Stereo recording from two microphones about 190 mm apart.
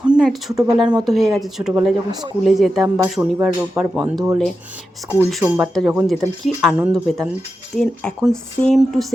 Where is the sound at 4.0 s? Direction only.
20° right (ahead or behind).